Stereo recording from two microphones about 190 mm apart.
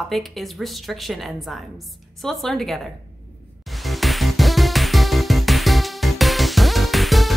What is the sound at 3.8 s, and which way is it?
Music, centre (ahead or behind).